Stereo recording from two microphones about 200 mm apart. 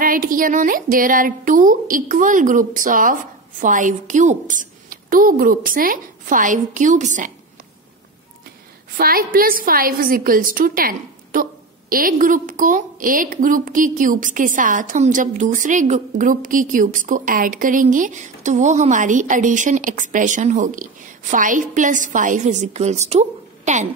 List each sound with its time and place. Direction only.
0.0 s a woman's voice: 45° right (ahead or behind)
8.9 s a woman's voice: 45° right (ahead or behind)